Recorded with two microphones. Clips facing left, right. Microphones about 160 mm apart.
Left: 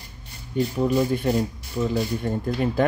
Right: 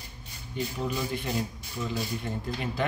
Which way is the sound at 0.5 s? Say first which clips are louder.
Left 10 dB; 50° left (ahead or behind).